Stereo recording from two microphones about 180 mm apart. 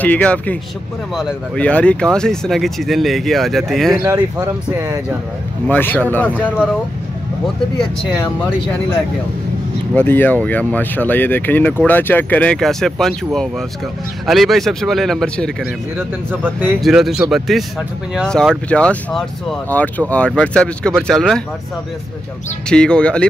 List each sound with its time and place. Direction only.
0.0 s speech: 10° left (ahead or behind)
4.0 s speech: 20° right (ahead or behind)
5.7 s speech: 10° left (ahead or behind)
9.9 s speech: 10° left (ahead or behind)
16.3 s speech: 10° right (ahead or behind)
22.7 s speech: 5° left (ahead or behind)